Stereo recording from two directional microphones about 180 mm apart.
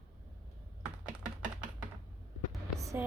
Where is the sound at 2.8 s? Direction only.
15° right (ahead or behind).